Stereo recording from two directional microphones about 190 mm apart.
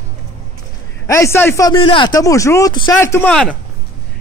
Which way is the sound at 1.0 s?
15° left (ahead or behind).